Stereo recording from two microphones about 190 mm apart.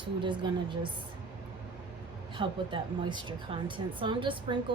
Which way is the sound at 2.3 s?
25° right (ahead or behind).